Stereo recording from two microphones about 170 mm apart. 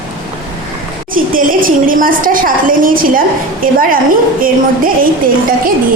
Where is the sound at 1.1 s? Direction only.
55° right (ahead or behind).